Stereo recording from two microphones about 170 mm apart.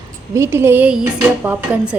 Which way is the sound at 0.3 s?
15° right (ahead or behind).